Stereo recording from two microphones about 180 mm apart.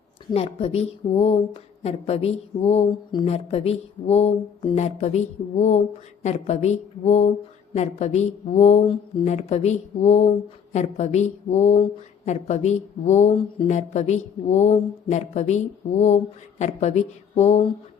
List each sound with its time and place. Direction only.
0.3 s speech: 35° left (ahead or behind)